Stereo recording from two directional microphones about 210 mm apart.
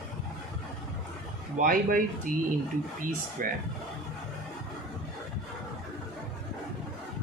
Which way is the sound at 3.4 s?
45° right (ahead or behind).